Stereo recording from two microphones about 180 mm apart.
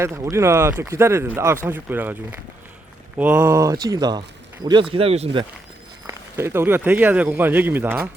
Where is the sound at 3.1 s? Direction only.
10° right (ahead or behind); by 5.5 s 30° right (ahead or behind).